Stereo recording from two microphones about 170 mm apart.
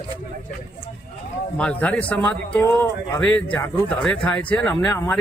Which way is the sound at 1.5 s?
5° left (ahead or behind).